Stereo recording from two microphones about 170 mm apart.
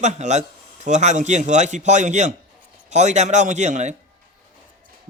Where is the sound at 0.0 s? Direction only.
45° right (ahead or behind).